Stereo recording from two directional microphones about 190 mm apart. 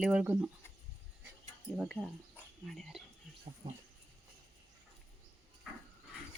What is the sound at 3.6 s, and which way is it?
Speech, 20° right (ahead or behind).